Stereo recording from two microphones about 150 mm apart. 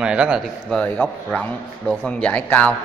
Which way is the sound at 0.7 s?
10° left (ahead or behind).